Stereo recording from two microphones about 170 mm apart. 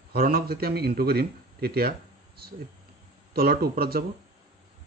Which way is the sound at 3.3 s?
60° right (ahead or behind).